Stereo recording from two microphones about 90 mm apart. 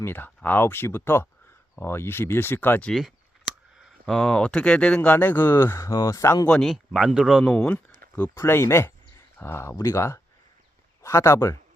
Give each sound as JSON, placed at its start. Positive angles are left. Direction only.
{"t": 0.0, "sound": "speech", "side_deg": 25}
{"t": 3.0, "sound": "clicking", "side_deg": -5}
{"t": 4.0, "sound": "speech", "side_deg": 5}
{"t": 6.5, "sound": "speech", "side_deg": 5}
{"t": 6.9, "sound": "speech", "side_deg": -5}
{"t": 7.6, "sound": "speech", "side_deg": 20}